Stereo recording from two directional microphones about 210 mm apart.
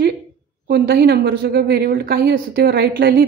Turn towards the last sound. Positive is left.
turn(degrees=-45)  # may be behind; listen again after turning